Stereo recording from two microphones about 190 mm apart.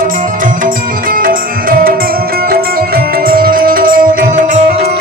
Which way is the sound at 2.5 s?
50° right (ahead or behind).